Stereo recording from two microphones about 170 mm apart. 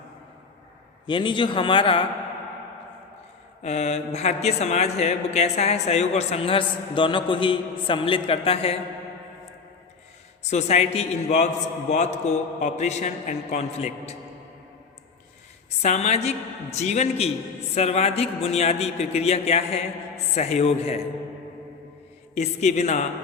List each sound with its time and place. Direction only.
1.0 s a man's voice: 30° left (ahead or behind)
3.6 s speech: 40° left (ahead or behind)
10.5 s a man's voice: 40° left (ahead or behind)
15.8 s speech: 40° left (ahead or behind)
22.4 s speech: 40° left (ahead or behind)